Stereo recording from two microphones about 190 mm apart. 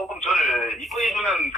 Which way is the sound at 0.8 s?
Centre (ahead or behind).